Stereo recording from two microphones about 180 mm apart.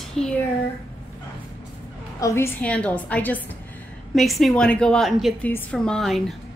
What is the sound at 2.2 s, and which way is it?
A woman's voice, 15° left (ahead or behind).